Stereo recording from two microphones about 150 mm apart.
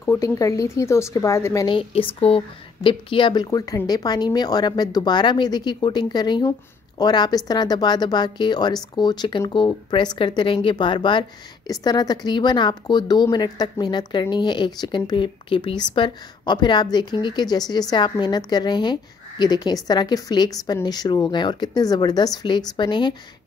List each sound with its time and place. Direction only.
0.0 s speech: 20° left (ahead or behind)
1.8 s speech: 40° left (ahead or behind)